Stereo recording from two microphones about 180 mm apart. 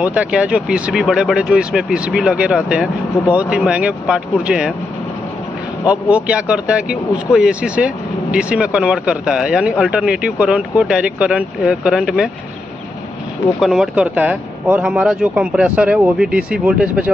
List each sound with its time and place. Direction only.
0.0 s speech: 5° right (ahead or behind)
5.9 s speech: 5° right (ahead or behind)
13.6 s speech: centre (ahead or behind)